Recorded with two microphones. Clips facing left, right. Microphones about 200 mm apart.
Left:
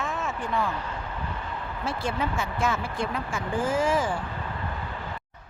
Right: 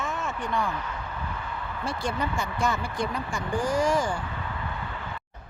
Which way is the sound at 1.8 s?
Centre (ahead or behind).